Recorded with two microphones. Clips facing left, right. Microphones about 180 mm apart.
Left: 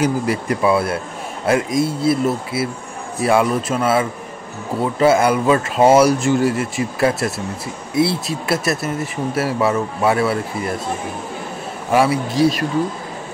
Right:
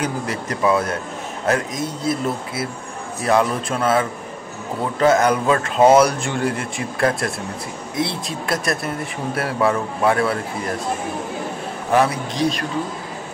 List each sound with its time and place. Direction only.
0.0 s speech: 10° left (ahead or behind)
11.9 s speech: 10° left (ahead or behind)